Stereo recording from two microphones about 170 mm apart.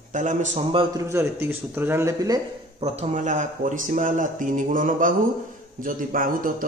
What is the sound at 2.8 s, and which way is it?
Speech, 45° right (ahead or behind).